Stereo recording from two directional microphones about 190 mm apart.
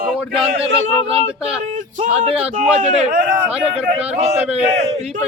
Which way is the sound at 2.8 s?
45° right (ahead or behind).